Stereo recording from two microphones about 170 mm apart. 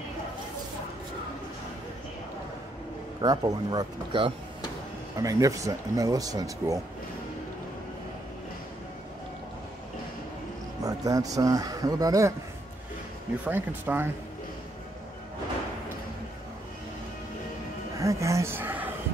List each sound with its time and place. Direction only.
3.2 s speech: 20° right (ahead or behind)
10.8 s speech: 20° right (ahead or behind)
13.5 s speech: 10° right (ahead or behind)
17.9 s speech: 20° right (ahead or behind)